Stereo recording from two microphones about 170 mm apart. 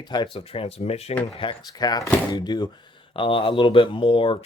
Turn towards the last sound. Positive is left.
turn(degrees=30)  # may be behind; listen again after turning